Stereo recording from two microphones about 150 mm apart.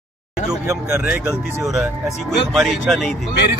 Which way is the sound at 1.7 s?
Centre (ahead or behind).